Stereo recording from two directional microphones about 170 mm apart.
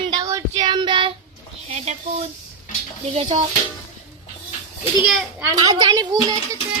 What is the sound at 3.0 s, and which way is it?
Dishes, 40° right (ahead or behind).